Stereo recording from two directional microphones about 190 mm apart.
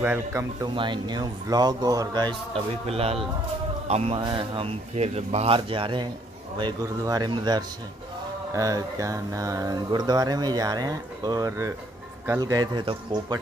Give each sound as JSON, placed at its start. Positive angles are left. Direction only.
{"t": 0.0, "sound": "speech", "side_deg": -10}
{"t": 0.7, "sound": "speech", "side_deg": -25}